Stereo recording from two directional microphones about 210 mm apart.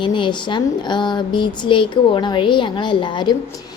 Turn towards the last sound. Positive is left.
turn(degrees=20)  # may be behind; listen again after turning